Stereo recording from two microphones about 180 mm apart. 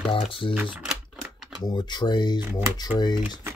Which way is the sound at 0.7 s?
5° right (ahead or behind).